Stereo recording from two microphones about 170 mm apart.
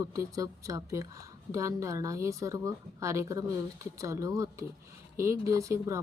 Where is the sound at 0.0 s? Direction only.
20° right (ahead or behind).